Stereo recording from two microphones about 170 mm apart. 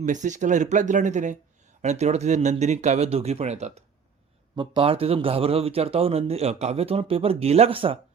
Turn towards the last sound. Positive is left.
turn(degrees=-35)  # may be behind; listen again after turning